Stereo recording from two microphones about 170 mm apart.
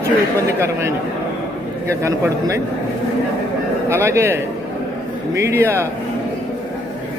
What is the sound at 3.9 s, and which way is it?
A man's voice, 15° right (ahead or behind).